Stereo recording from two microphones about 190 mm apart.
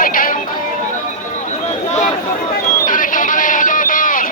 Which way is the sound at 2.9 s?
45° left (ahead or behind).